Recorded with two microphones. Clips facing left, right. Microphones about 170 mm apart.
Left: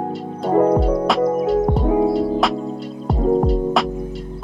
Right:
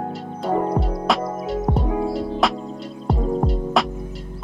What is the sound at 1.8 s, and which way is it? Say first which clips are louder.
Music: left 7 dB; 25° left (ahead or behind).